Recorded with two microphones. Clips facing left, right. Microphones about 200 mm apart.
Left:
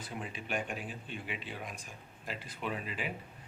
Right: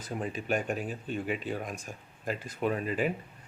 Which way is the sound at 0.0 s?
40° right (ahead or behind).